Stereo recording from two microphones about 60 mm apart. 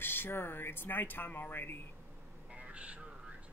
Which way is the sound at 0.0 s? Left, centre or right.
Left.